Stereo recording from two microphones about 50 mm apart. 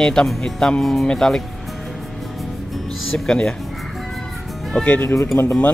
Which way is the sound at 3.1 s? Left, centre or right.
Centre.